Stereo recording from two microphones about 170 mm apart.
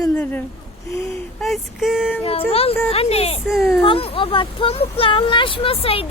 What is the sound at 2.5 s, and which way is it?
Speech, 35° left (ahead or behind).